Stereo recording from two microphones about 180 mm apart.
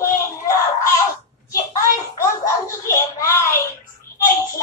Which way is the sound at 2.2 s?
15° left (ahead or behind).